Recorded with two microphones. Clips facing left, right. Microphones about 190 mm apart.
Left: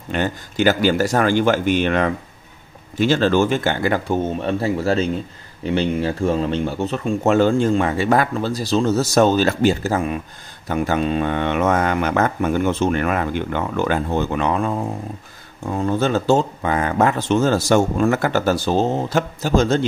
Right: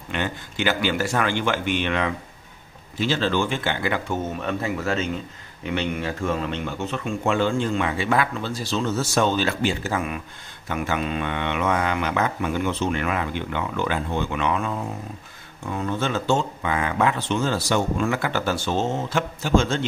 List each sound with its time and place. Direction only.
0.1 s speech: 40° left (ahead or behind)